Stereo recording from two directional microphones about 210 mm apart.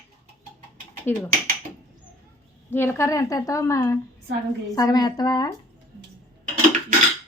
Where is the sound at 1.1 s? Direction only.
10° left (ahead or behind).